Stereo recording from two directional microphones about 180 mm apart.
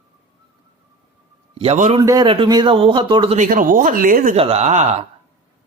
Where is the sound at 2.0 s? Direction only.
20° right (ahead or behind).